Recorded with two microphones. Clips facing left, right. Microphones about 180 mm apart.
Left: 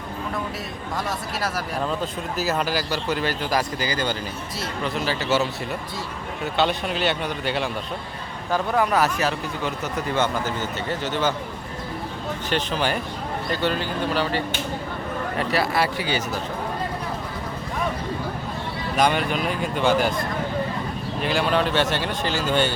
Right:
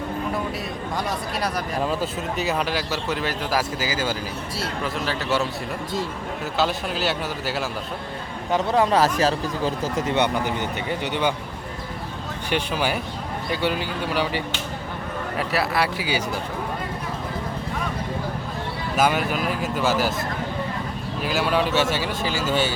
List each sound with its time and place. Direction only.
1.8 s speech: 5° right (ahead or behind)
8.5 s speech: 25° right (ahead or behind)
12.5 s speech: 10° right (ahead or behind)
15.4 s speech: centre (ahead or behind)
18.9 s speech: 5° right (ahead or behind)
21.2 s speech: 5° right (ahead or behind)